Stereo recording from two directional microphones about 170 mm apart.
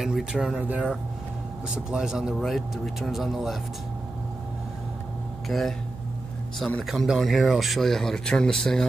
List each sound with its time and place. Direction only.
0.0 s speech: centre (ahead or behind)
5.5 s speech: centre (ahead or behind)